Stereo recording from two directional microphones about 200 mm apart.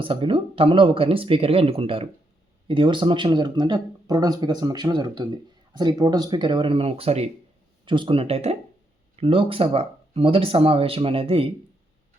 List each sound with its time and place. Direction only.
0.0 s speech: 25° right (ahead or behind)